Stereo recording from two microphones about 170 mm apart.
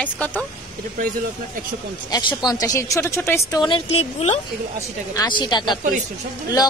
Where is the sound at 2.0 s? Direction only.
20° left (ahead or behind).